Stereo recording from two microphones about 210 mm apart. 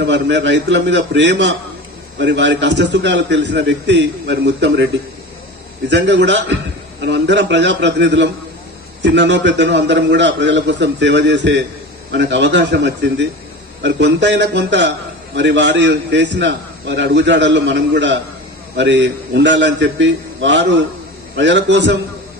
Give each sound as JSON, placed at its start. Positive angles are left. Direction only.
{"t": 0.0, "sound": "a man's voice", "side_deg": -55}
{"t": 5.9, "sound": "a man's voice", "side_deg": -55}